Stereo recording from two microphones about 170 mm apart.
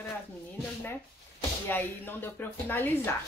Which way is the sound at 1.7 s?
10° left (ahead or behind).